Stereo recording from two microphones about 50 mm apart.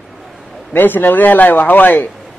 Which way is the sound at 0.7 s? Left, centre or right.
Left.